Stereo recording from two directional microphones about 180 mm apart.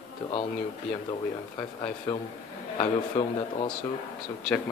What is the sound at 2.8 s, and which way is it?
Speech, 30° left (ahead or behind).